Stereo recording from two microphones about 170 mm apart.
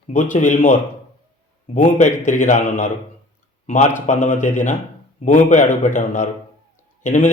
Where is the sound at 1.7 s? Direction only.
45° left (ahead or behind).